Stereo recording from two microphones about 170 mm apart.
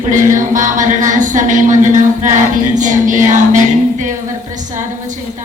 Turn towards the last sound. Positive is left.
turn(degrees=-45)  # may be behind; listen again after turning